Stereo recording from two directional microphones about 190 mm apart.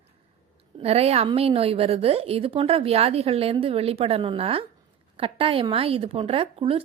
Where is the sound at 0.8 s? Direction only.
35° right (ahead or behind).